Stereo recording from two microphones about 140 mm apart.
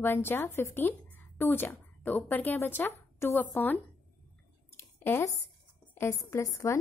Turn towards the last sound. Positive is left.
turn(degrees=20)  # may be behind; listen again after turning